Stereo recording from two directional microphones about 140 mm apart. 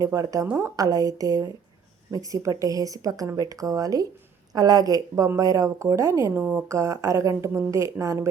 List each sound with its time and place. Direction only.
0.0 s a woman's voice: 25° right (ahead or behind)
0.8 s a woman's voice: 25° right (ahead or behind)